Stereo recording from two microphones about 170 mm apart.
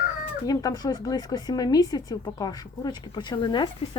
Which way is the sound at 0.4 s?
25° left (ahead or behind).